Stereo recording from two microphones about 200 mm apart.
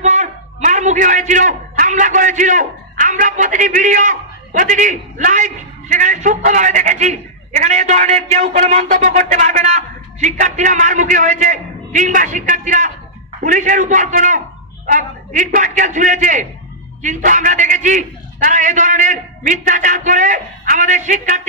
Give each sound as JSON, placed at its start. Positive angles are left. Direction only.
{"t": 0.0, "sound": "a man's voice", "side_deg": -35}